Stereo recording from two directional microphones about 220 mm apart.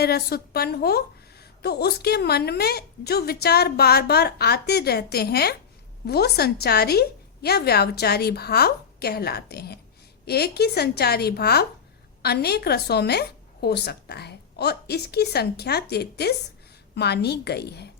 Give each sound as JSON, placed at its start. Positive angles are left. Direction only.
{"t": 0.0, "sound": "a woman's voice", "side_deg": 45}